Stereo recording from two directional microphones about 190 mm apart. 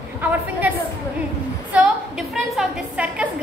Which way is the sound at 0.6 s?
10° right (ahead or behind).